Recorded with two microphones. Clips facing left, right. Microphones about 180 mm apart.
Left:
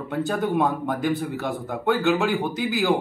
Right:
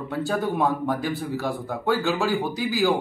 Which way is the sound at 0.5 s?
Centre (ahead or behind).